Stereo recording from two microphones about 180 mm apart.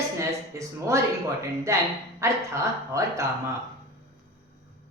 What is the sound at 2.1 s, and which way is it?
Speech, 15° right (ahead or behind).